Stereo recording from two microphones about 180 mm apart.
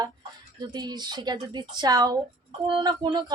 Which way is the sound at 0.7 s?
25° right (ahead or behind).